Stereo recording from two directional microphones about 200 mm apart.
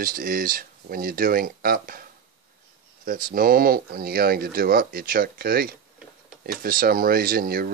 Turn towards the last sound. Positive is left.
turn(degrees=-50)  # may be behind; listen again after turning